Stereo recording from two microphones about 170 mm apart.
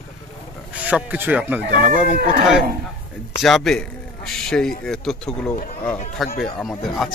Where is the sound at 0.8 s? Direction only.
10° right (ahead or behind).